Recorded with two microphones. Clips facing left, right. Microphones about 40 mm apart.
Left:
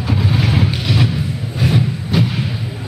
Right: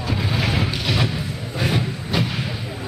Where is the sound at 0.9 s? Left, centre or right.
Centre.